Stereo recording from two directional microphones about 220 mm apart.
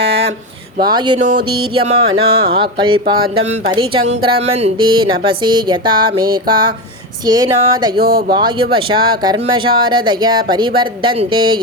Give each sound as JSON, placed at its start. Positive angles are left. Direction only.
{"t": 0.9, "sound": "speech", "side_deg": -20}
{"t": 7.3, "sound": "a sound", "side_deg": -15}
{"t": 7.9, "sound": "speech", "side_deg": -45}
{"t": 8.4, "sound": "speech", "side_deg": -20}